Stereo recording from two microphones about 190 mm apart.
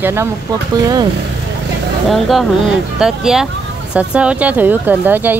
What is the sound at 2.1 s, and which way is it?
Speech, centre (ahead or behind).